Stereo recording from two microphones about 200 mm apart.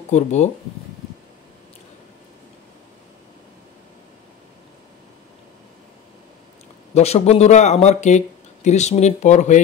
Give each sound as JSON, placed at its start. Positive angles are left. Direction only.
{"t": 0.1, "sound": "speech", "side_deg": 35}
{"t": 6.9, "sound": "speech", "side_deg": 30}